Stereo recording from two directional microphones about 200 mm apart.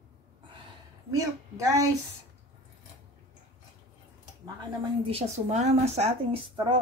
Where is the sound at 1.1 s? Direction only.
15° right (ahead or behind).